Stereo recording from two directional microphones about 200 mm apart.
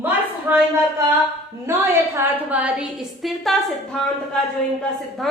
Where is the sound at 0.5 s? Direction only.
10° right (ahead or behind).